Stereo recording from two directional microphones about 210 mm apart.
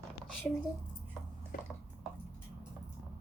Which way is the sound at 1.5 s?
40° left (ahead or behind).